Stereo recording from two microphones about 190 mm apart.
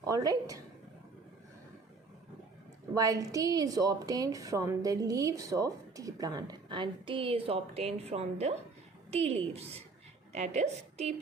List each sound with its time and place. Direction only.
0.0 s a woman's voice: 20° right (ahead or behind)
2.9 s a woman's voice: 20° right (ahead or behind); by 11.1 s 35° right (ahead or behind)